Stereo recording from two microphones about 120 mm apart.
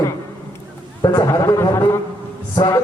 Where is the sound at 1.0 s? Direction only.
35° left (ahead or behind).